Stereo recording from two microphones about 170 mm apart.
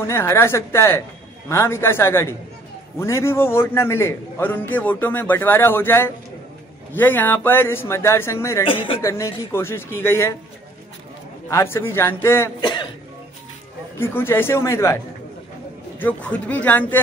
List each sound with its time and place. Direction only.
0.0 s a man's voice: 15° left (ahead or behind)
11.4 s a man's voice: 15° left (ahead or behind)
12.5 s cough: 30° left (ahead or behind)
13.9 s a man's voice: 15° left (ahead or behind)
16.0 s a man's voice: 10° left (ahead or behind)